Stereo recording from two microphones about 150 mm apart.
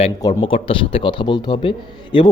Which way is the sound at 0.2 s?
25° left (ahead or behind).